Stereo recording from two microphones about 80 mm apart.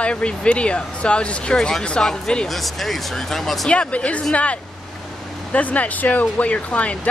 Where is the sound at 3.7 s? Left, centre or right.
Centre.